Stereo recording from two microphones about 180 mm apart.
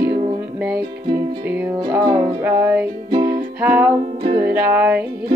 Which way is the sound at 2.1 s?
25° right (ahead or behind).